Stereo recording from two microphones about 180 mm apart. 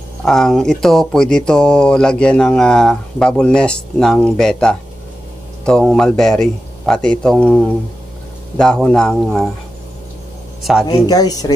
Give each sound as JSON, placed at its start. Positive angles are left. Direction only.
{"t": 0.2, "sound": "speech", "side_deg": 0}
{"t": 10.6, "sound": "a man's voice", "side_deg": 0}
{"t": 11.1, "sound": "speech", "side_deg": 20}